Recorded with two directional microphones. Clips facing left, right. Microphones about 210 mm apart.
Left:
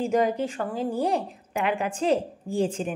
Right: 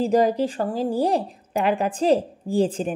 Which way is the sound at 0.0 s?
35° right (ahead or behind).